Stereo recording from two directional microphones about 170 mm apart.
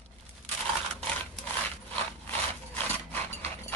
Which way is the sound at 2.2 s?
10° left (ahead or behind).